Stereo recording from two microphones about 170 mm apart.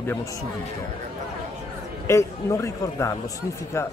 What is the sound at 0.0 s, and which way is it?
Speech, 15° left (ahead or behind).